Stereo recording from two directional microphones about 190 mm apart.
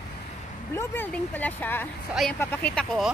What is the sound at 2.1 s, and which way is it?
Speech, centre (ahead or behind).